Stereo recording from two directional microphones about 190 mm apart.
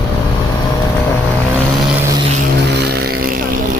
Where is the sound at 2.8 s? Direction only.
60° right (ahead or behind).